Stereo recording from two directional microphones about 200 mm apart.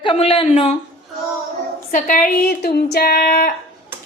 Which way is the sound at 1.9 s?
45° left (ahead or behind).